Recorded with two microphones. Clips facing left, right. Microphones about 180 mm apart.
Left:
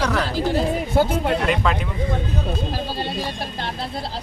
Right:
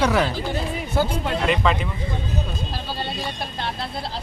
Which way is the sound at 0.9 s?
50° left (ahead or behind).